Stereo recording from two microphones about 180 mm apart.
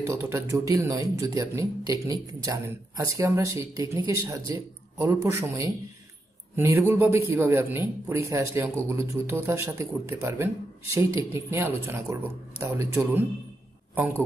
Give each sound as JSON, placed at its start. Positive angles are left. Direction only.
{"t": 0.0, "sound": "a man's voice", "side_deg": -15}